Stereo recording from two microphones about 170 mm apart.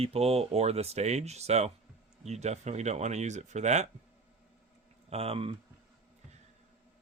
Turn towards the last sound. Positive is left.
turn(degrees=-35)  # may be behind; listen again after turning